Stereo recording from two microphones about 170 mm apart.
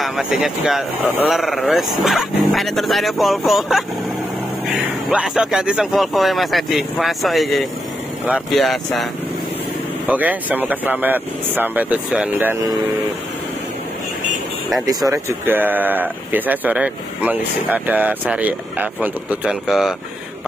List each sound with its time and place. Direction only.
0.0 s a man's voice: centre (ahead or behind)
10.0 s speech: 10° right (ahead or behind)
14.9 s speech: 20° right (ahead or behind); by 20.0 s centre (ahead or behind)